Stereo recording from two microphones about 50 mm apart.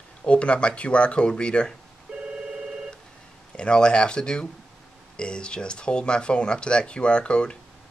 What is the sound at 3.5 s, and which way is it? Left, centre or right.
Speech, centre.